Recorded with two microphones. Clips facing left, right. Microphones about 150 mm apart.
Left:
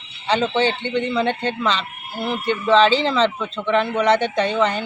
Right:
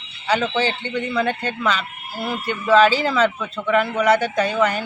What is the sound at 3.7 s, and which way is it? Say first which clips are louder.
Speech: even; 5° right (ahead or behind).